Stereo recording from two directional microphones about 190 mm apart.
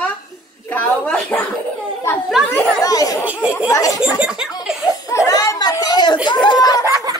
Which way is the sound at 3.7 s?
20° left (ahead or behind).